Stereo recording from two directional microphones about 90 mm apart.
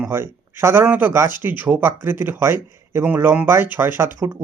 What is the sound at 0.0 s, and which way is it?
Speech, 25° right (ahead or behind).